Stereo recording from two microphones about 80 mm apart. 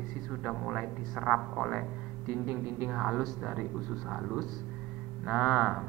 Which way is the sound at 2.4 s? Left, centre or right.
Right.